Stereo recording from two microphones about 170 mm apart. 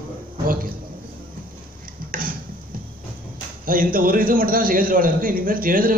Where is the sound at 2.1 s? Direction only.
55° right (ahead or behind).